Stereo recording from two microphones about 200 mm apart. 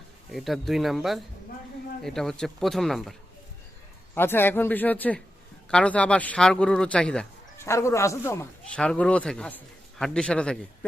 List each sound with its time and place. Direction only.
0.3 s speech: centre (ahead or behind)
4.1 s a man's voice: 10° left (ahead or behind)